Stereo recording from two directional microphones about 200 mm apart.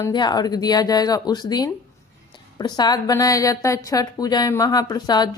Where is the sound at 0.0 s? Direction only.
20° left (ahead or behind).